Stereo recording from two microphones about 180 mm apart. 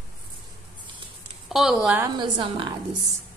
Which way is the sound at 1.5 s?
Centre (ahead or behind).